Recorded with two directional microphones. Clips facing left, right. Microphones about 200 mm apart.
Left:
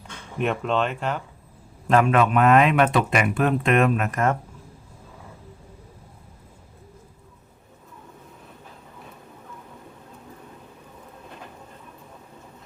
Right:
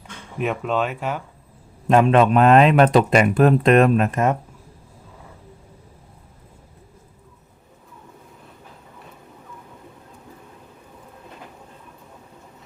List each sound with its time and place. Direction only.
0.3 s speech: 5° right (ahead or behind)
1.9 s speech: 25° right (ahead or behind)